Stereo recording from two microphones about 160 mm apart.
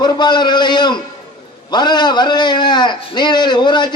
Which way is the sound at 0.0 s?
25° left (ahead or behind).